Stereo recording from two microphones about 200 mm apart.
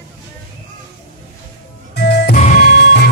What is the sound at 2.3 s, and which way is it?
Music, 40° left (ahead or behind).